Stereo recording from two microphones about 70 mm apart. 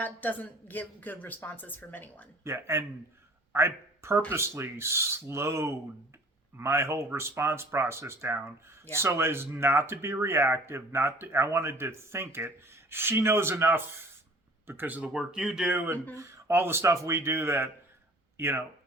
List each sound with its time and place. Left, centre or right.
0.0 s a woman's voice: left
2.4 s a man's voice: right
15.1 s speech: centre
16.1 s speech: right